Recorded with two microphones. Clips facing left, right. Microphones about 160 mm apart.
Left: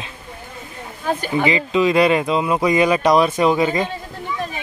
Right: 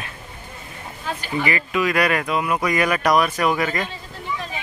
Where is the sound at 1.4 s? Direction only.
20° left (ahead or behind).